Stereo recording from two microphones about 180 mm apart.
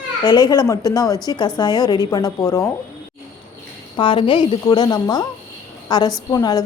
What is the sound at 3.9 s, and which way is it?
A woman's voice, 25° left (ahead or behind).